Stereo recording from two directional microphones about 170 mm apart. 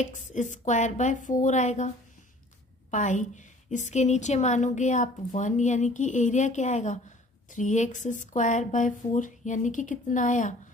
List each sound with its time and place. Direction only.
0.0 s a woman's voice: 45° left (ahead or behind)
2.9 s a woman's voice: 45° left (ahead or behind)